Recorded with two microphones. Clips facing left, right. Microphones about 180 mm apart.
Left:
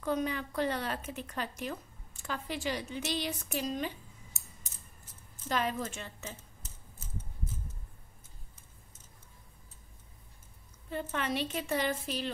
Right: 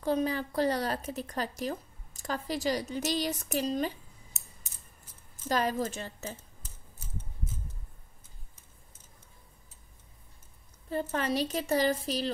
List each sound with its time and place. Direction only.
0.0 s speech: 35° right (ahead or behind)
5.5 s speech: 40° right (ahead or behind)
10.9 s speech: 40° right (ahead or behind)